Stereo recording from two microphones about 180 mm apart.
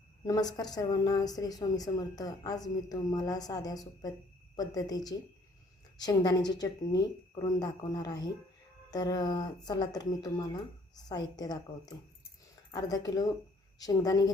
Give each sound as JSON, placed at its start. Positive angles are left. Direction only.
{"t": 0.3, "sound": "a woman's voice", "side_deg": 20}